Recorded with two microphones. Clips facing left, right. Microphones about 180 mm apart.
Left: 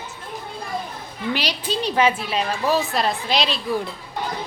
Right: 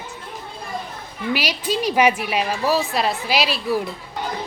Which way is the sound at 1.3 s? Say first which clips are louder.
Right 3 dB; 10° right (ahead or behind).